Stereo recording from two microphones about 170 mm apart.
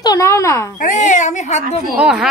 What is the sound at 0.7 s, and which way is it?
Speech, 50° left (ahead or behind).